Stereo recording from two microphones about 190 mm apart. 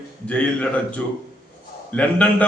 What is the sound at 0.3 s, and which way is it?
Speech, 5° left (ahead or behind).